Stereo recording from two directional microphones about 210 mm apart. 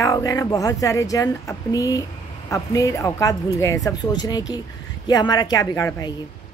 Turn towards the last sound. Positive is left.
turn(degrees=15)  # may be behind; listen again after turning